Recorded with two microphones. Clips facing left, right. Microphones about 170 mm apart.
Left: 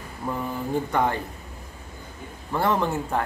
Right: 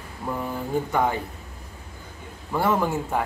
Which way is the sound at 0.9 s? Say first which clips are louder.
Even; 5° right (ahead or behind).